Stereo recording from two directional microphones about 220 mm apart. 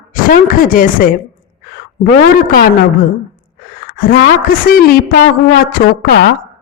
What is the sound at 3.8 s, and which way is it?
A woman's voice, 40° left (ahead or behind).